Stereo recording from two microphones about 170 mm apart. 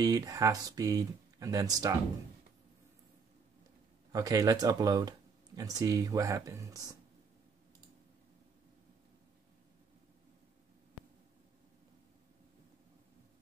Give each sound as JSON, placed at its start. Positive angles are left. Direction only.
{"t": 0.0, "sound": "speech", "side_deg": -20}
{"t": 4.1, "sound": "speech", "side_deg": -20}